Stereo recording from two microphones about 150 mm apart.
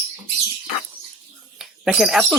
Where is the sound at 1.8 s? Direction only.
Centre (ahead or behind).